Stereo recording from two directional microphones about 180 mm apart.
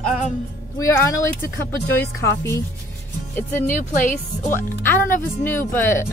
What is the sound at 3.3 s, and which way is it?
Speech, 10° left (ahead or behind).